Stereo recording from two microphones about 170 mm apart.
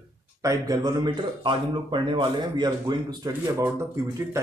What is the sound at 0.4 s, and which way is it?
Speech, 20° right (ahead or behind).